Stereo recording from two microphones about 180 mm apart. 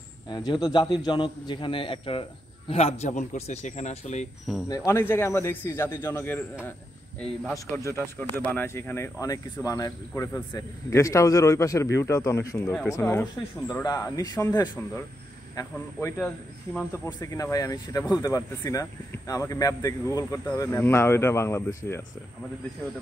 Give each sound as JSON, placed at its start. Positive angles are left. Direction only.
{"t": 0.3, "sound": "a man's voice", "side_deg": 25}
{"t": 4.6, "sound": "speech", "side_deg": 15}
{"t": 7.5, "sound": "a man's voice", "side_deg": 15}
{"t": 17.0, "sound": "a man's voice", "side_deg": 20}